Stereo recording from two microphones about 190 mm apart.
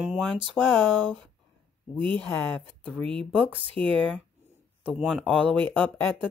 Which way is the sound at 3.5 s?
30° right (ahead or behind).